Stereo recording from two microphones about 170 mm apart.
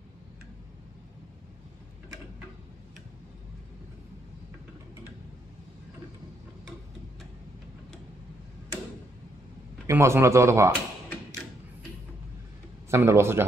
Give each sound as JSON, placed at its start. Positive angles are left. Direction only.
{"t": 9.8, "sound": "speech", "side_deg": -15}
{"t": 12.9, "sound": "speech", "side_deg": -15}